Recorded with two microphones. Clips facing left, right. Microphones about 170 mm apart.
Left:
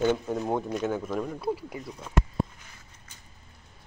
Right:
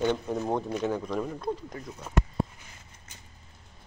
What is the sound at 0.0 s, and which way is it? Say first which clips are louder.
Speech: left 2 dB; centre (ahead or behind).